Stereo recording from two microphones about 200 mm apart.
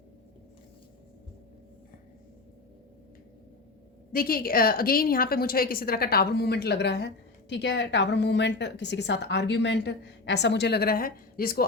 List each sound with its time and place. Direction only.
4.1 s a woman's voice: 45° left (ahead or behind)